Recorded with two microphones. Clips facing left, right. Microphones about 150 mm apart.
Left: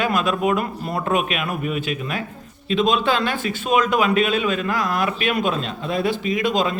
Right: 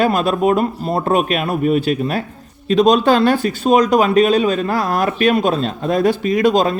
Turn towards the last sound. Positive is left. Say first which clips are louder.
# right 6 dB
turn(degrees=-40)  # may be behind; listen again after turning